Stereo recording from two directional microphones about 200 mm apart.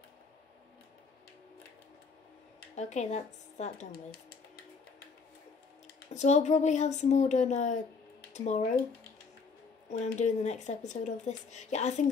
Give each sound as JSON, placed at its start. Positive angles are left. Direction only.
{"t": 2.7, "sound": "speech", "side_deg": 35}
{"t": 6.1, "sound": "speech", "side_deg": 35}
{"t": 9.8, "sound": "speech", "side_deg": 35}